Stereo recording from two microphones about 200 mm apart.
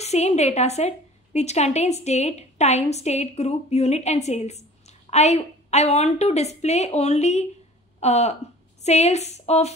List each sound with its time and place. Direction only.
0.0 s a woman's voice: 35° left (ahead or behind)